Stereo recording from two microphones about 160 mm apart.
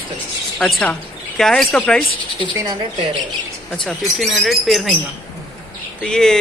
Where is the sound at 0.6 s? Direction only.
5° left (ahead or behind).